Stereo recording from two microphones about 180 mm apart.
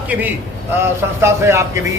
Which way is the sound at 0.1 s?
10° right (ahead or behind).